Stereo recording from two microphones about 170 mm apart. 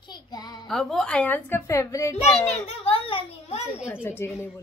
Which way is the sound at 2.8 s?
35° left (ahead or behind).